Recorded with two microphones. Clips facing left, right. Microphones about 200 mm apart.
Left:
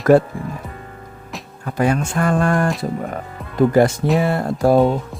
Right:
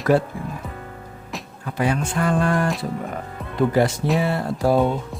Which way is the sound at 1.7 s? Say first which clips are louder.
Left 4 dB; 45° left (ahead or behind).